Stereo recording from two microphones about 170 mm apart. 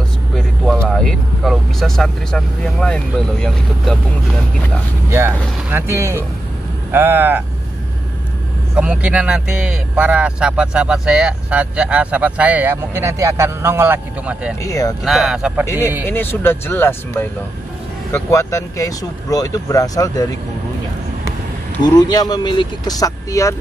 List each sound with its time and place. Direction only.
0.4 s speech: 5° left (ahead or behind)
5.7 s speech: 15° right (ahead or behind)
8.7 s speech: 5° right (ahead or behind)
14.6 s speech: 20° left (ahead or behind)
15.0 s speech: centre (ahead or behind)
16.1 s speech: 10° left (ahead or behind)
22.1 s speech: 25° left (ahead or behind)